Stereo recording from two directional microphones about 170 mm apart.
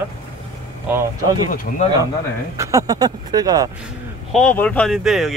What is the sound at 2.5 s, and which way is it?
Speech, 20° right (ahead or behind).